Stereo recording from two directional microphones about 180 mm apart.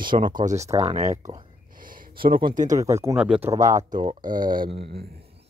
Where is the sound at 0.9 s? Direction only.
40° right (ahead or behind).